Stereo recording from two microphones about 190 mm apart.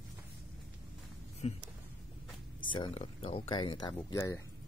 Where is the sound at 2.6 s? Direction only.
25° left (ahead or behind).